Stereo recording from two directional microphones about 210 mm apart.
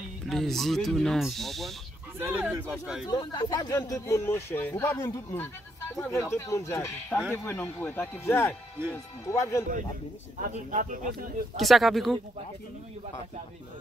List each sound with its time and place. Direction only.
0.3 s speech: centre (ahead or behind)
3.1 s speech: 20° left (ahead or behind)
10.4 s speech: 35° right (ahead or behind)
11.5 s speech: centre (ahead or behind)